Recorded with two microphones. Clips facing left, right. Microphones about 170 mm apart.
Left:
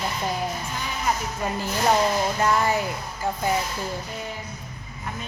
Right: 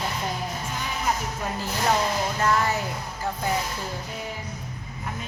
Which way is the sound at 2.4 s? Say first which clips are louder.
Left 1 dB; 10° left (ahead or behind).